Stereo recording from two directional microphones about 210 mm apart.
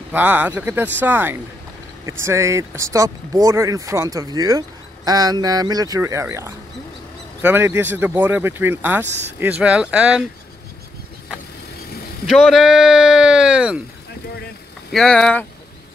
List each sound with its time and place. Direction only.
0.1 s speech: 10° right (ahead or behind)
12.3 s speech: centre (ahead or behind)
14.9 s speech: 5° left (ahead or behind)